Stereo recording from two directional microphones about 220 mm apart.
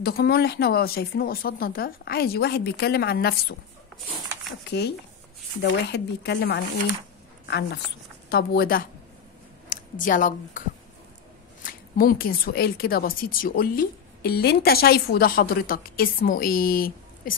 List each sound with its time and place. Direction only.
0.0 s speech: 45° left (ahead or behind)
4.6 s a woman's voice: 50° left (ahead or behind)
11.6 s a woman's voice: 40° left (ahead or behind)